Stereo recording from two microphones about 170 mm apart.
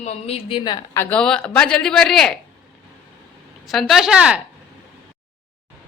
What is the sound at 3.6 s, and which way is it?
Speech, centre (ahead or behind).